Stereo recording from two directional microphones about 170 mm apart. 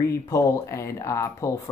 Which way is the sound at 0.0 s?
20° left (ahead or behind).